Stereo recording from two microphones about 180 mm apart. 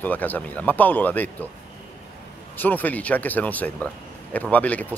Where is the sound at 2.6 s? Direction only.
10° left (ahead or behind).